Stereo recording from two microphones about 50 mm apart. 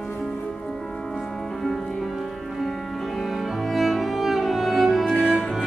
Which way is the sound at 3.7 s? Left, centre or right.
Centre.